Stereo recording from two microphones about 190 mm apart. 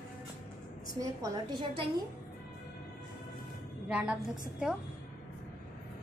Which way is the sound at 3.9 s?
5° right (ahead or behind).